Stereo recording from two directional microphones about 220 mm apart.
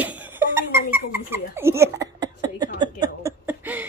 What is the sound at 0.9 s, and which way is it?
Speech, 10° right (ahead or behind).